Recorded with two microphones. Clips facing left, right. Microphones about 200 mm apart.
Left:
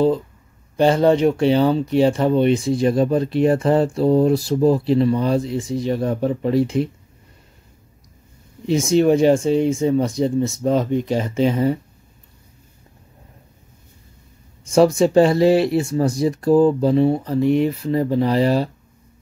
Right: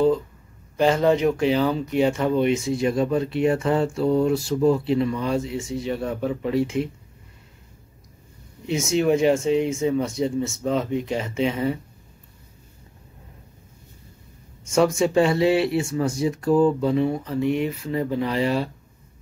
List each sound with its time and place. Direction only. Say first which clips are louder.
0.7 s speech: left 4 dB; 30° left (ahead or behind)
8.6 s speech: left 5 dB; 35° left (ahead or behind)
14.7 s speech: left 5 dB; 35° left (ahead or behind)